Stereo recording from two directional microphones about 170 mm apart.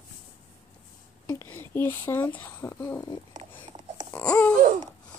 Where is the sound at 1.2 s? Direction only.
15° left (ahead or behind).